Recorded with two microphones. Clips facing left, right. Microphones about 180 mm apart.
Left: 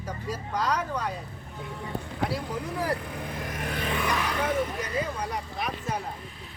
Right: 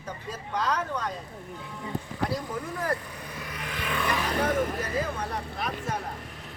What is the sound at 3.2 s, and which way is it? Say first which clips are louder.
Vehicle: left 4 dB; 50° left (ahead or behind).